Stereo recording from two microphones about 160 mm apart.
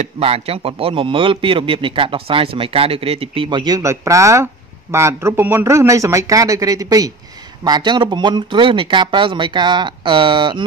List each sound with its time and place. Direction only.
0.0 s a man's voice: 40° right (ahead or behind)